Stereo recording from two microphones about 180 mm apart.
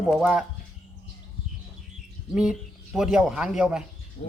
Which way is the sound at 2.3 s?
5° right (ahead or behind).